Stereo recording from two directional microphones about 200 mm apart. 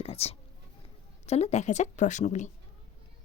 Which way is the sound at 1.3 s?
35° left (ahead or behind).